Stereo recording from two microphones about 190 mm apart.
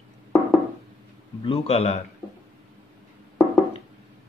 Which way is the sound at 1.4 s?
30° left (ahead or behind).